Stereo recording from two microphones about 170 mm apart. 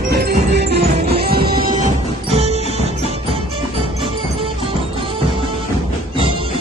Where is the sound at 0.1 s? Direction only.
70° right (ahead or behind).